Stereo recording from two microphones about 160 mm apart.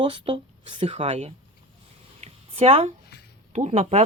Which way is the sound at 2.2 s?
40° right (ahead or behind).